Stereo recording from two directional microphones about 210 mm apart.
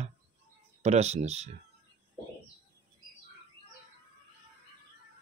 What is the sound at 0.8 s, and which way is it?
Speech, 30° right (ahead or behind).